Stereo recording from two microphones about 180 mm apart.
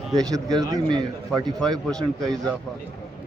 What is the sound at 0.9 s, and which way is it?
A man's voice, 5° left (ahead or behind).